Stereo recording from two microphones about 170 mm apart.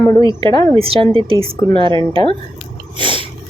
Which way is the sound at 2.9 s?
30° right (ahead or behind).